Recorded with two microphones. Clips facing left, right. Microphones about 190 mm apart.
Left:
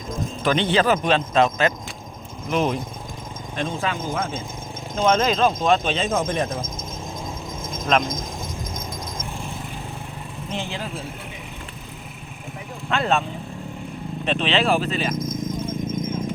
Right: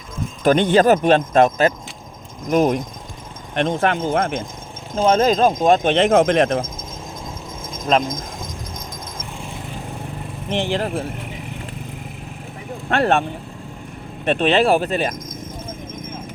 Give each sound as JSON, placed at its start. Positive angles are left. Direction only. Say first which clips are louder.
{"t": 0.4, "sound": "speech", "louder": "right 6 dB", "side_deg": -45}
{"t": 3.5, "sound": "speech", "louder": "right 7 dB", "side_deg": -65}
{"t": 4.9, "sound": "speech", "louder": "right 4 dB", "side_deg": -40}
{"t": 7.9, "sound": "speech", "louder": "right 3 dB", "side_deg": -30}
{"t": 10.5, "sound": "speech", "louder": "right 9 dB", "side_deg": -75}
{"t": 14.3, "sound": "speech", "louder": "right 5 dB", "side_deg": -50}